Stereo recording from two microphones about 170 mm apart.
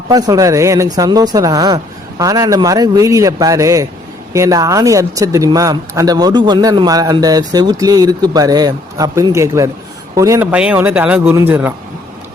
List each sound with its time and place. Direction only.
0.1 s speech: 20° right (ahead or behind)
10.5 s speech: 10° right (ahead or behind)